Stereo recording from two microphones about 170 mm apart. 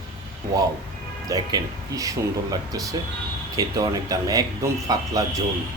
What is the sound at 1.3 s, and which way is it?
Speech, 20° right (ahead or behind).